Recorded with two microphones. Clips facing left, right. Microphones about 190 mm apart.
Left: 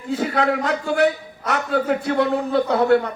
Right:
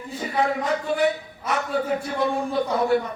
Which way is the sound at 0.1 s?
75° left (ahead or behind).